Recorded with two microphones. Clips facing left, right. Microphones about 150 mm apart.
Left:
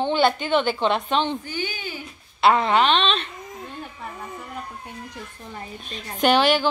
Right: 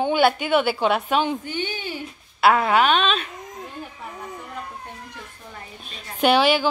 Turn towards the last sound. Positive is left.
turn(degrees=-10)  # may be behind; listen again after turning